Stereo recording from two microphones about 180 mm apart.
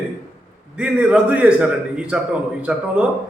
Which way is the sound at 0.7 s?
5° right (ahead or behind).